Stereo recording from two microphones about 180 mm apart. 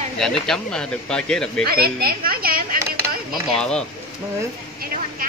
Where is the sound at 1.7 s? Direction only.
60° right (ahead or behind).